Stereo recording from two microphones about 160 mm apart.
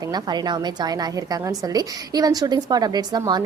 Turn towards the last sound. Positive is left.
turn(degrees=-25)  # may be behind; listen again after turning